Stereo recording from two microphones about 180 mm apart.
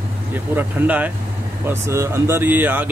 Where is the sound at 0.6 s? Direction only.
10° right (ahead or behind).